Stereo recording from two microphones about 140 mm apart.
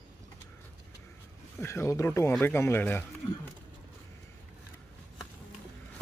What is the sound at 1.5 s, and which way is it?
Speech, 20° left (ahead or behind).